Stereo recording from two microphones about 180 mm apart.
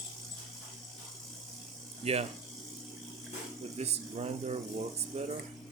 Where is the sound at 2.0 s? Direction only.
35° right (ahead or behind).